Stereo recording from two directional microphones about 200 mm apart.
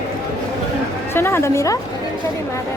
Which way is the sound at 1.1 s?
10° left (ahead or behind).